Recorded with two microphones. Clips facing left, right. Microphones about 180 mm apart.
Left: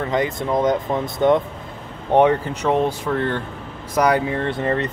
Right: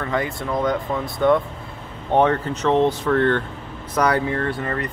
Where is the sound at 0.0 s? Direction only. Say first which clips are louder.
Left 3 dB; 20° left (ahead or behind).